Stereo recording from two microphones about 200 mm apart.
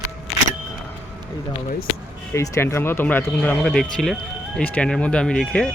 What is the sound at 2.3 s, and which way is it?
Speech, 15° left (ahead or behind).